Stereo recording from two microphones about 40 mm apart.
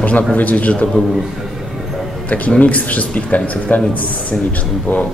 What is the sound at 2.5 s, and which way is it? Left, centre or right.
Speech, left.